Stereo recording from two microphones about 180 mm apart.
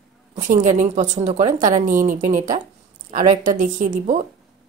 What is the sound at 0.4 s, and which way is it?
A woman's voice, 45° right (ahead or behind).